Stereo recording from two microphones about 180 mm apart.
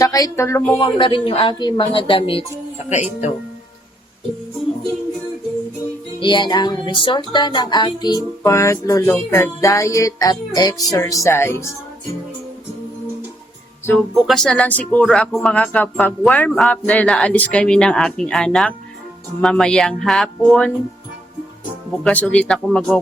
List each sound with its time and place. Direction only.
0.0 s speech: 20° left (ahead or behind)
0.8 s speech: 25° left (ahead or behind)
6.1 s speech: 25° left (ahead or behind)
14.3 s speech: 5° left (ahead or behind)
22.0 s speech: 10° left (ahead or behind)